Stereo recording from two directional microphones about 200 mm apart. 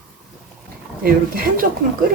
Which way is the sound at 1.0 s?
45° right (ahead or behind).